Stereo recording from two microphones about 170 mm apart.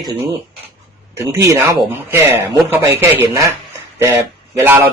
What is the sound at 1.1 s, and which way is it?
A man's voice, 20° right (ahead or behind).